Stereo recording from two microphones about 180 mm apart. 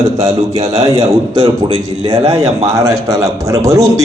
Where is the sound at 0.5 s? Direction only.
20° right (ahead or behind).